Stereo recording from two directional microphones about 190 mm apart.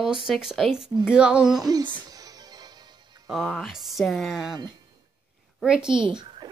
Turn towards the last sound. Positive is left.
turn(degrees=-20)  # may be behind; listen again after turning